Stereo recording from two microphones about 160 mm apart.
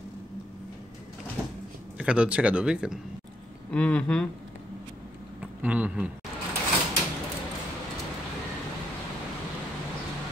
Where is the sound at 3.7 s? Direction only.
10° left (ahead or behind).